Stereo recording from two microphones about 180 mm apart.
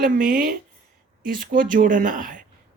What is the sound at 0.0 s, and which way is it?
Speech, 50° right (ahead or behind).